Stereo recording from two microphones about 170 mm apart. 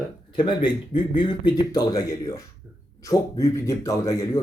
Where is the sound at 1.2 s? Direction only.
25° left (ahead or behind).